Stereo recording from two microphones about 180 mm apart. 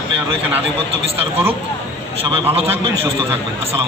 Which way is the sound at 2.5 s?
35° right (ahead or behind).